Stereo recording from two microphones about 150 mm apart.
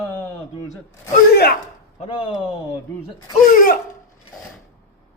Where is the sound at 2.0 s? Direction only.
35° left (ahead or behind).